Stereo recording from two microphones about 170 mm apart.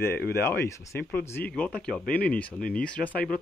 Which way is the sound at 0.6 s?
15° left (ahead or behind).